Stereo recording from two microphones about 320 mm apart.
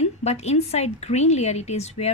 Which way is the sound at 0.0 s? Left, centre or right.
Centre.